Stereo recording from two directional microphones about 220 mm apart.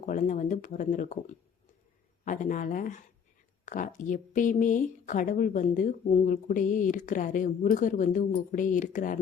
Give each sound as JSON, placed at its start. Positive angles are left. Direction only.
{"t": 0.0, "sound": "speech", "side_deg": 35}
{"t": 2.2, "sound": "speech", "side_deg": 35}